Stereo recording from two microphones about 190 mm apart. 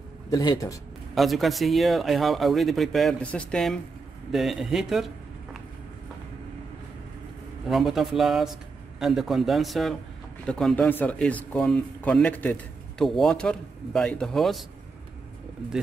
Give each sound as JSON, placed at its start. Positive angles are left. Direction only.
{"t": 0.3, "sound": "speech", "side_deg": 20}
{"t": 1.1, "sound": "speech", "side_deg": 0}
{"t": 7.6, "sound": "speech", "side_deg": 0}